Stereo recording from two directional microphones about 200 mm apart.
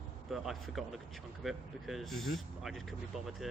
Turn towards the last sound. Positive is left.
turn(degrees=0)  # may be behind; listen again after turning